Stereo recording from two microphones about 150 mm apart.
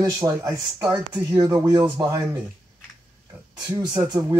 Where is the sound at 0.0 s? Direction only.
20° right (ahead or behind).